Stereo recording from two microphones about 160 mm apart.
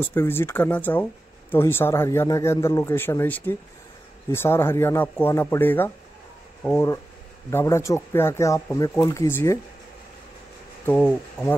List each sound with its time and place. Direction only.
0.0 s speech: 15° left (ahead or behind)